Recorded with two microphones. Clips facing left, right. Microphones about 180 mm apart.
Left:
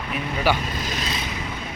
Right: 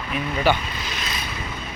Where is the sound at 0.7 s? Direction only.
45° left (ahead or behind).